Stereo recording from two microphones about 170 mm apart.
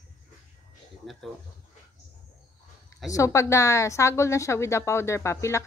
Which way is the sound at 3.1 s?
20° left (ahead or behind).